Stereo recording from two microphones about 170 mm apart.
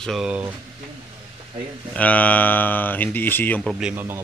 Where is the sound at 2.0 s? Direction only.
10° left (ahead or behind).